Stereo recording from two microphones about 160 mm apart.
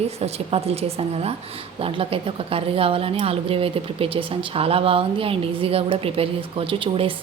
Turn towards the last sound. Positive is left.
turn(degrees=-35)  # may be behind; listen again after turning